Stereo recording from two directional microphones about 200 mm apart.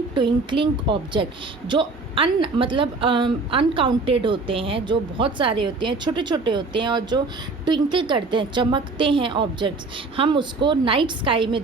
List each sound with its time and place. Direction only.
0.1 s a woman's voice: 25° right (ahead or behind)